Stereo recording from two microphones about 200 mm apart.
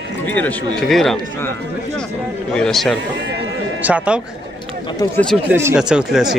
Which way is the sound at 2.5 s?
5° left (ahead or behind).